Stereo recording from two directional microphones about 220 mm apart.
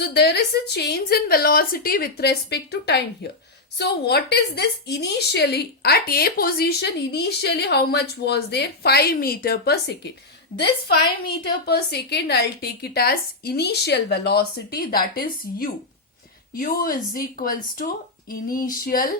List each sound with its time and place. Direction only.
0.0 s a woman's voice: 45° left (ahead or behind)
11.6 s a woman's voice: 50° left (ahead or behind)